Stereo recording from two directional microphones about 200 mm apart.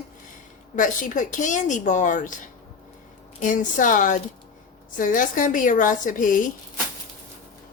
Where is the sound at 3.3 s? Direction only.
40° left (ahead or behind).